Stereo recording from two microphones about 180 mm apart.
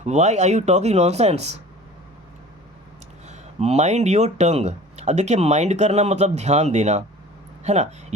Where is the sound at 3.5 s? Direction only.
40° right (ahead or behind).